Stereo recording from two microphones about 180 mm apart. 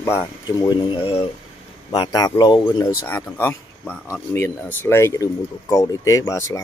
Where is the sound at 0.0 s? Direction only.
20° left (ahead or behind).